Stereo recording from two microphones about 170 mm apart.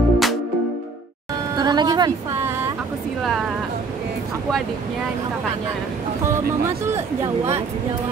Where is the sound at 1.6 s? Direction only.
25° right (ahead or behind).